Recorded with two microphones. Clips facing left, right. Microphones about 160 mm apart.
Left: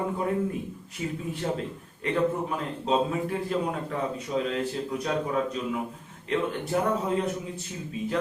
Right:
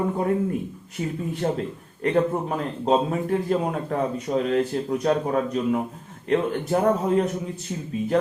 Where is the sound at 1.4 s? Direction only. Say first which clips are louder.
Right 5 dB; 45° right (ahead or behind).